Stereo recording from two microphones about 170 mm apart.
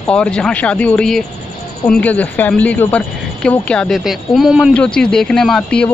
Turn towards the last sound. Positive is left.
turn(degrees=5)  # may be behind; listen again after turning